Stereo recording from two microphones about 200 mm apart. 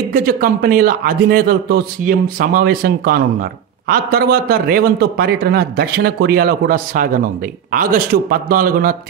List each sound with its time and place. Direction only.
0.1 s a man's voice: 50° right (ahead or behind)